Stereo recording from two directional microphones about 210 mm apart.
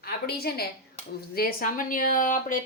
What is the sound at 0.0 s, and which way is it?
A woman's voice, 45° left (ahead or behind).